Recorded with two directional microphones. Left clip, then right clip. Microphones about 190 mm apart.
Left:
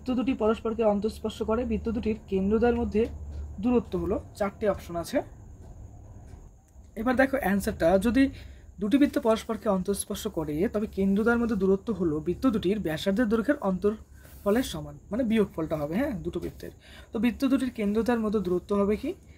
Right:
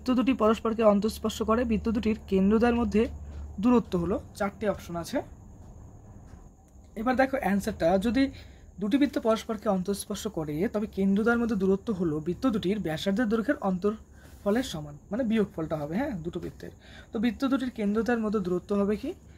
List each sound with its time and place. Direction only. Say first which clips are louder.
0.0 s speech: right 2 dB; 40° right (ahead or behind)
4.4 s speech: left 4 dB; 10° right (ahead or behind)
7.0 s speech: left 1 dB; centre (ahead or behind)